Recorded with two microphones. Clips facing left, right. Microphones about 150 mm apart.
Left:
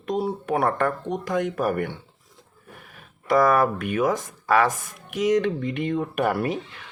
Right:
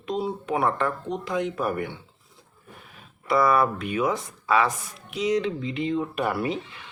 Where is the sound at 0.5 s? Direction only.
50° left (ahead or behind).